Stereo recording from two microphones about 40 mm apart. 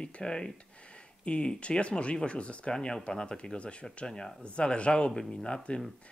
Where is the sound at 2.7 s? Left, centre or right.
Centre.